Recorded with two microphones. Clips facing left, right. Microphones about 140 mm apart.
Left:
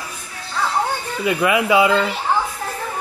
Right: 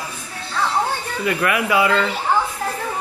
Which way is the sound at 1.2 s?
20° left (ahead or behind).